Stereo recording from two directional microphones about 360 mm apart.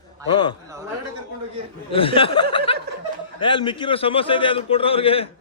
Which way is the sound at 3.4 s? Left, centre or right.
Centre.